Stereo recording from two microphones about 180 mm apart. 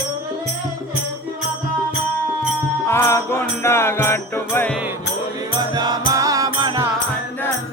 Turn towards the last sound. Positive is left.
turn(degrees=-25)  # may be behind; listen again after turning